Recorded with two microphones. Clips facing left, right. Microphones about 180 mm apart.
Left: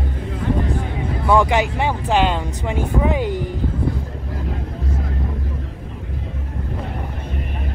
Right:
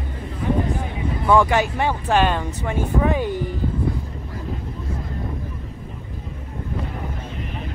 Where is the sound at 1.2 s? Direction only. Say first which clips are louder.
Even; 15° left (ahead or behind).